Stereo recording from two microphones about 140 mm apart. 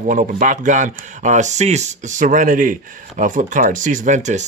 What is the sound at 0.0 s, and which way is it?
Speech, 60° right (ahead or behind).